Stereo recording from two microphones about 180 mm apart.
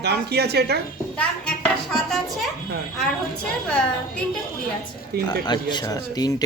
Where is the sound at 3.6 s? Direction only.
5° left (ahead or behind).